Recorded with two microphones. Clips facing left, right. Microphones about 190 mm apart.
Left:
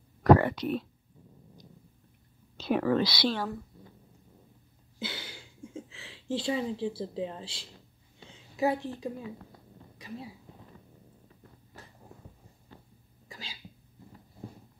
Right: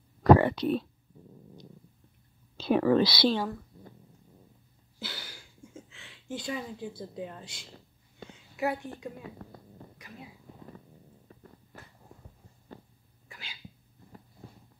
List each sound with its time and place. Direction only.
0.2 s speech: 25° right (ahead or behind)
2.5 s a woman's voice: 30° right (ahead or behind)
4.9 s a sound: 20° left (ahead or behind)
8.5 s a woman's voice: 30° left (ahead or behind)
9.9 s a sound: 30° left (ahead or behind)
13.3 s cat: 35° left (ahead or behind)